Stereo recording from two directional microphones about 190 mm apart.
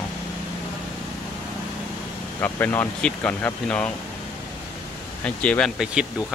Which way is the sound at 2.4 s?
10° left (ahead or behind).